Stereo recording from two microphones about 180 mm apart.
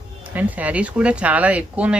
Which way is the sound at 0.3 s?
10° right (ahead or behind).